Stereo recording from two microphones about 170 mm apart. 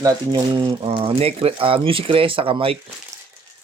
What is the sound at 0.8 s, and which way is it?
Speech, 35° right (ahead or behind).